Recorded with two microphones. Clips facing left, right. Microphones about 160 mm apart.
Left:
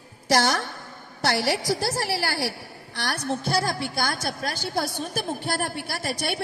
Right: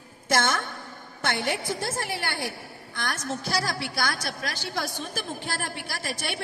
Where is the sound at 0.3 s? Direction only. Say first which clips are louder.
Left 3 dB; 35° left (ahead or behind).